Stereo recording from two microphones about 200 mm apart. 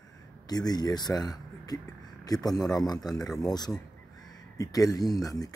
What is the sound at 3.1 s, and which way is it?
Speech, centre (ahead or behind).